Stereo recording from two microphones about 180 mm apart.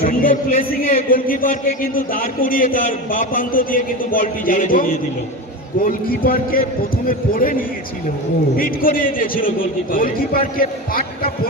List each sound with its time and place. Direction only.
0.0 s a man's voice: 50° left (ahead or behind)